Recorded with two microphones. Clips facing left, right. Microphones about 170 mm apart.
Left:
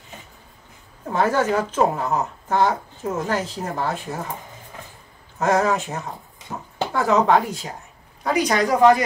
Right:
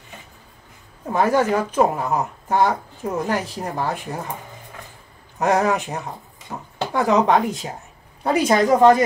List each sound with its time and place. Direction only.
1.1 s speech: 15° right (ahead or behind)
5.4 s speech: 15° right (ahead or behind)
6.5 s a sound: centre (ahead or behind)
6.9 s a woman's voice: 15° right (ahead or behind)